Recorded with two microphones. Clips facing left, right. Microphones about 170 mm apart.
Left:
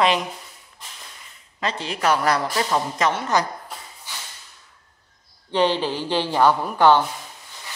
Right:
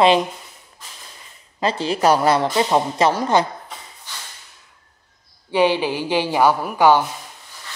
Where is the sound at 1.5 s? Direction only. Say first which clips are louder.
Right 6 dB; 30° right (ahead or behind).